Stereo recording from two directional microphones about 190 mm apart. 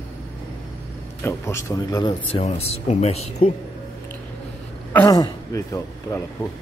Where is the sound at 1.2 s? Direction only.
15° left (ahead or behind).